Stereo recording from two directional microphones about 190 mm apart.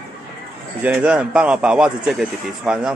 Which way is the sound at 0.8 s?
5° right (ahead or behind).